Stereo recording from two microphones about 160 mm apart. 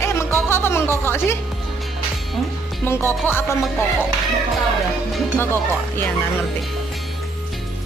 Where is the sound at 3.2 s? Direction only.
15° left (ahead or behind).